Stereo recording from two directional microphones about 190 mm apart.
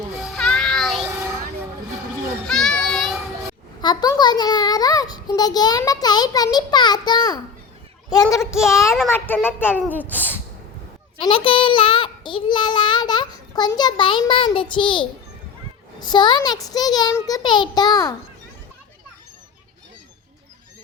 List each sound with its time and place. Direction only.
0.2 s child singing: centre (ahead or behind)
2.5 s children playing: centre (ahead or behind)
3.8 s a sound: 20° left (ahead or behind)
8.1 s a child's voice: 20° left (ahead or behind)
11.2 s a child's voice: 25° left (ahead or behind)